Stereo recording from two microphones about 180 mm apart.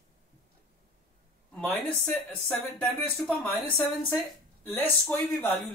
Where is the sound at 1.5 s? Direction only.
5° left (ahead or behind).